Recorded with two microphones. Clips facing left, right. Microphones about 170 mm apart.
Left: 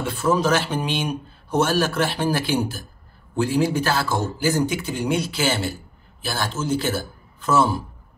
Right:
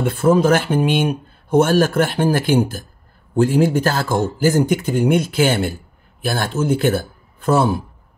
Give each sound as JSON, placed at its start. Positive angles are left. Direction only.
{"t": 0.0, "sound": "speech", "side_deg": -55}